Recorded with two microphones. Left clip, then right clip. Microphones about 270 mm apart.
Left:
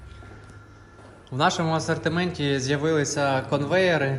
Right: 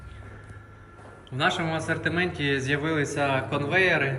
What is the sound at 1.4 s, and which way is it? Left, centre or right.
A man's voice, centre.